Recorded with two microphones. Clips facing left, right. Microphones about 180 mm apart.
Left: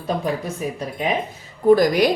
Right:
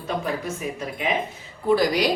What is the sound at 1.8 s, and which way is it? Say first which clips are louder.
Speech: left 4 dB; 50° left (ahead or behind).